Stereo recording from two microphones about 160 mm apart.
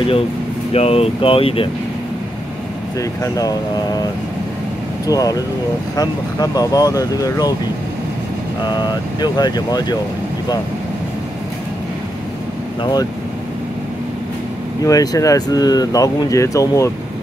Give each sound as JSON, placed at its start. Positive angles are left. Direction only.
{"t": 0.7, "sound": "speech", "side_deg": 40}
{"t": 3.0, "sound": "speech", "side_deg": 20}
{"t": 5.0, "sound": "speech", "side_deg": 20}
{"t": 8.6, "sound": "speech", "side_deg": 25}
{"t": 14.9, "sound": "speech", "side_deg": 20}